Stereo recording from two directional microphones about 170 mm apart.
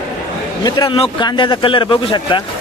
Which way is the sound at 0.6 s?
25° left (ahead or behind).